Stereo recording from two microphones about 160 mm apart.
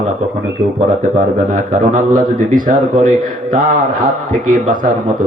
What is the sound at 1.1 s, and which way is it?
A man's voice, 55° right (ahead or behind).